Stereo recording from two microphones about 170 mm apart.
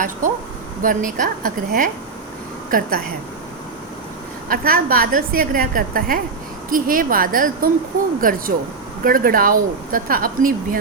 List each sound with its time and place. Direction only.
0.8 s a woman's voice: 50° right (ahead or behind)
4.4 s a woman's voice: 60° right (ahead or behind)